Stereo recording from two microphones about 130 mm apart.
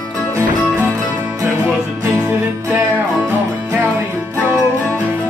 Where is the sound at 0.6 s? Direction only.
10° right (ahead or behind).